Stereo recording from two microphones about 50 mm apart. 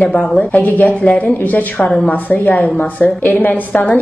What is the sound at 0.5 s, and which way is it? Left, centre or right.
A woman's voice, left.